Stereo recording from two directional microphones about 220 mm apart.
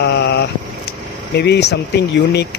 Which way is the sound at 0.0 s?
50° left (ahead or behind).